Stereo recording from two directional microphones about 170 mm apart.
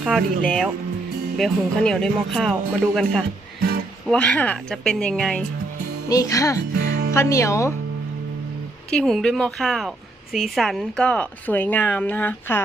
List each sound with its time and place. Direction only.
0.0 s speech: 5° right (ahead or behind)
1.4 s speech: 5° left (ahead or behind)
6.1 s music: 20° left (ahead or behind)
6.7 s music: 60° right (ahead or behind)
7.1 s a woman's voice: 15° left (ahead or behind)
8.9 s a woman's voice: 5° left (ahead or behind)